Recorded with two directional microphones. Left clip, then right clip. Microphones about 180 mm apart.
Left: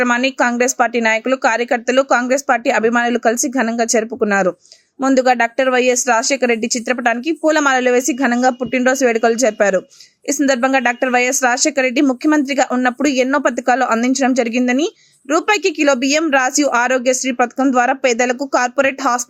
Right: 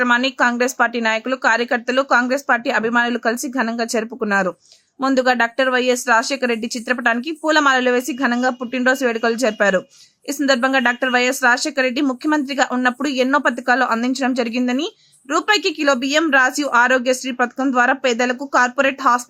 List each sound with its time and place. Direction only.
0.0 s speech: 10° left (ahead or behind)